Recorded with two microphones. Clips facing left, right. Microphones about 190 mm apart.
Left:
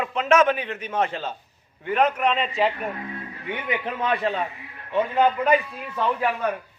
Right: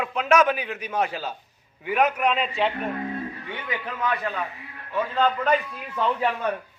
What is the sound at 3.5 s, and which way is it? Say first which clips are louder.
A man's voice: left 9 dB; 25° left (ahead or behind).